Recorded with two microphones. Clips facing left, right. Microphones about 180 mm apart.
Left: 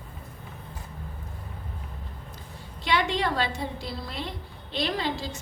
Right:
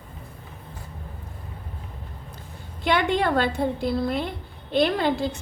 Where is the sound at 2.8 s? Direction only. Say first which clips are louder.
Right 4 dB; 55° right (ahead or behind).